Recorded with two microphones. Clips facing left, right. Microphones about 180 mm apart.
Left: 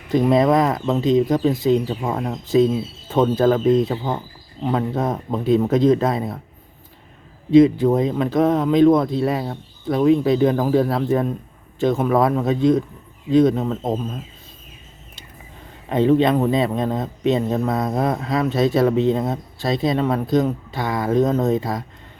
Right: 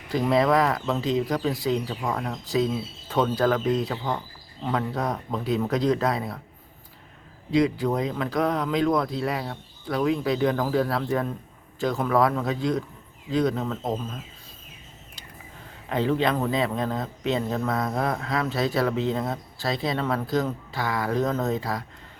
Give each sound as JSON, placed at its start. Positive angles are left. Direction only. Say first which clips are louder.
{"t": 0.1, "sound": "speech", "louder": "left 5 dB", "side_deg": 20}
{"t": 7.5, "sound": "speech", "louder": "left 9 dB", "side_deg": 25}
{"t": 15.9, "sound": "speech", "louder": "left 8 dB", "side_deg": 20}